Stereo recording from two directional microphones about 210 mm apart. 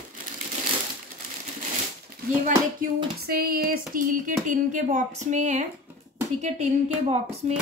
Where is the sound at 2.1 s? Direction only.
45° right (ahead or behind).